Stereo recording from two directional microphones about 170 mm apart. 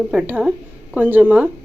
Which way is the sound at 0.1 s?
5° right (ahead or behind).